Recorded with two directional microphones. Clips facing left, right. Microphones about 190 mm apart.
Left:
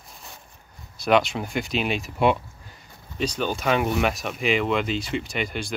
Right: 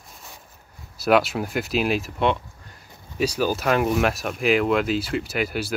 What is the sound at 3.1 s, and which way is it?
Speech, 10° right (ahead or behind).